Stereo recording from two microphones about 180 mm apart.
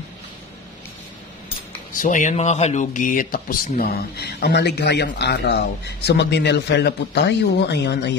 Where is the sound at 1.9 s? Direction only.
45° left (ahead or behind).